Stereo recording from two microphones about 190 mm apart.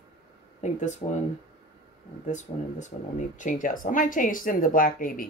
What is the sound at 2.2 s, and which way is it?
Speech, 40° left (ahead or behind).